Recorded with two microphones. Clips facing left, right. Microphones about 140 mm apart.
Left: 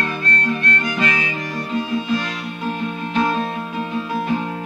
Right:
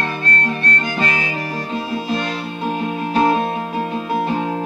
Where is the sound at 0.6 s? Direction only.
35° right (ahead or behind).